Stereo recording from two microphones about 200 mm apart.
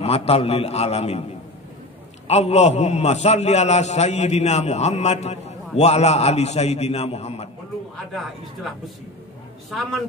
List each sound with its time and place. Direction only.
0.0 s a man's voice: 30° left (ahead or behind)
2.2 s a man's voice: 35° left (ahead or behind)
8.1 s a man's voice: centre (ahead or behind)